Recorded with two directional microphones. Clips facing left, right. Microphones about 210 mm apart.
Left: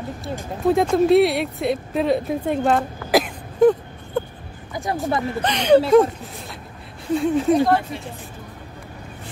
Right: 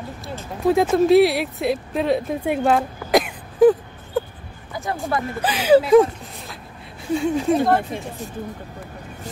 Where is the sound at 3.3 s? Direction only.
5° right (ahead or behind).